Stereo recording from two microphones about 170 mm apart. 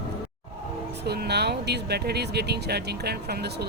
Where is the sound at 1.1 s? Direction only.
75° right (ahead or behind).